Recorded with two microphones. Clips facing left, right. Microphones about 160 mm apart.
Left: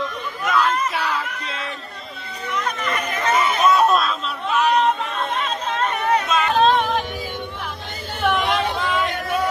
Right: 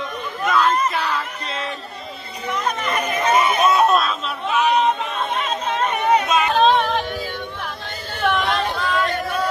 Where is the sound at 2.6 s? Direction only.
25° right (ahead or behind).